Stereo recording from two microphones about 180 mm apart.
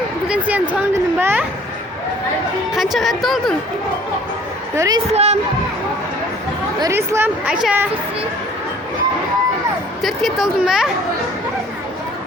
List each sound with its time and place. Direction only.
0.3 s a sound: 10° right (ahead or behind)
1.2 s speech: 10° right (ahead or behind)
2.7 s a woman's voice: centre (ahead or behind)
4.7 s a woman's voice: 15° right (ahead or behind)
5.1 s speech: 35° right (ahead or behind)
6.7 s speech: 15° right (ahead or behind)
10.0 s a woman's voice: centre (ahead or behind)